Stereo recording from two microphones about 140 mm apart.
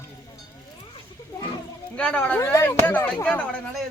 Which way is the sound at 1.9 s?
10° left (ahead or behind).